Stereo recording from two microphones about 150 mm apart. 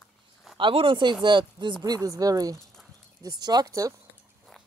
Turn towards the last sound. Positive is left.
turn(degrees=-20)  # may be behind; listen again after turning